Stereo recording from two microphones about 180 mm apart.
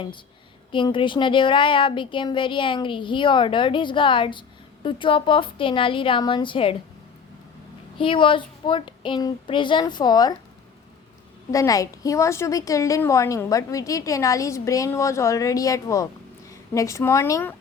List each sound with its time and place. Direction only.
0.7 s speech: 25° left (ahead or behind)
7.9 s speech: 30° left (ahead or behind)
11.5 s a woman's voice: 20° left (ahead or behind)